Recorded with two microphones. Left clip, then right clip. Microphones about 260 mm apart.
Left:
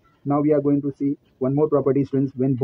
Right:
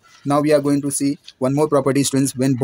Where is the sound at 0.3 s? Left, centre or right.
Right.